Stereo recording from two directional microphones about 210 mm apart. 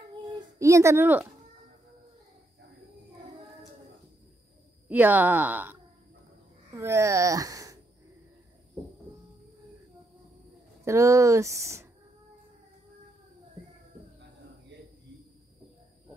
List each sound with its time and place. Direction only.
0.6 s speech: 15° right (ahead or behind)
4.8 s speech: 10° right (ahead or behind)
10.9 s speech: 15° right (ahead or behind)